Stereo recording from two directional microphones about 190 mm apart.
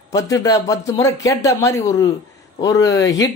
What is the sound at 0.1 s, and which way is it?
Speech, 20° left (ahead or behind).